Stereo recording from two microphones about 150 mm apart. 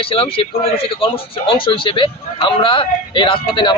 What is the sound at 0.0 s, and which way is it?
Speech, 40° left (ahead or behind).